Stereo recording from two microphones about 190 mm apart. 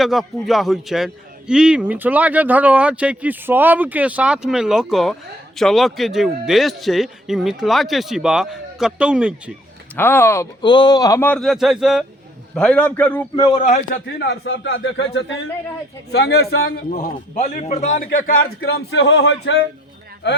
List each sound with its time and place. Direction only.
0.0 s a man's voice: centre (ahead or behind)
9.9 s speech: 10° left (ahead or behind)
13.3 s a man's voice: 25° left (ahead or behind)
13.7 s a man's voice: 40° left (ahead or behind)
14.2 s speech: 65° left (ahead or behind)
16.1 s speech: 60° left (ahead or behind)
16.9 s a man's voice: 40° left (ahead or behind)
18.1 s speech: 80° left
20.2 s speech: 65° left (ahead or behind)